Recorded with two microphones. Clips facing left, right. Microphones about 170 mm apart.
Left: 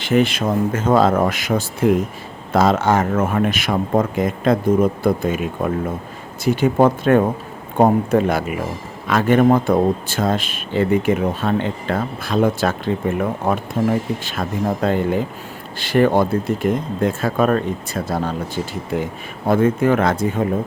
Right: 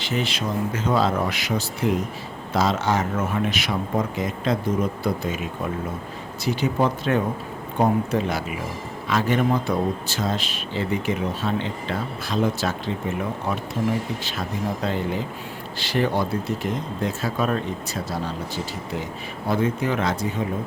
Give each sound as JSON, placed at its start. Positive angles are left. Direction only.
{"t": 0.0, "sound": "speech", "side_deg": 55}